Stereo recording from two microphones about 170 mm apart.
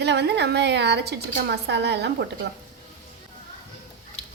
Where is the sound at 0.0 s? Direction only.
80° right.